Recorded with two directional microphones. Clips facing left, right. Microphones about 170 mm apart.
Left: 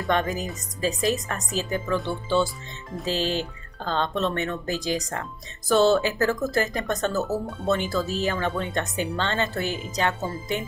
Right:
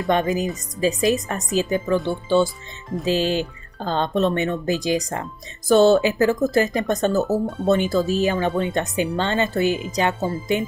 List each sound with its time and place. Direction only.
0.1 s speech: 15° right (ahead or behind)